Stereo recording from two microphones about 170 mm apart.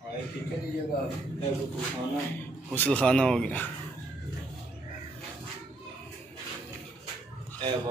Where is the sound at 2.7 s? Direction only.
10° left (ahead or behind).